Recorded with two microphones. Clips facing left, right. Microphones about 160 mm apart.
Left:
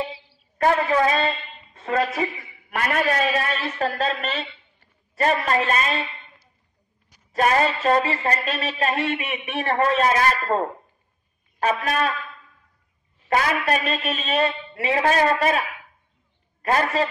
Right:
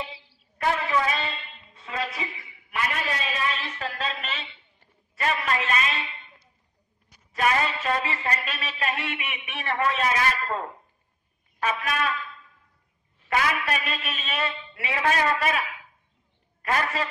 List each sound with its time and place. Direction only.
0.6 s a woman's voice: 45° left (ahead or behind)
7.3 s speech: 40° left (ahead or behind)
11.8 s speech: 35° left (ahead or behind)
13.3 s speech: 35° left (ahead or behind)
16.6 s speech: 35° left (ahead or behind)